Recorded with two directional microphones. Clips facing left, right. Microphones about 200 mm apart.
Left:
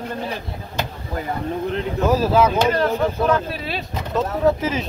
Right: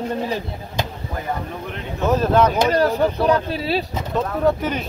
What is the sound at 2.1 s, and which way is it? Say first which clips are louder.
Speech: right 1 dB; 5° left (ahead or behind).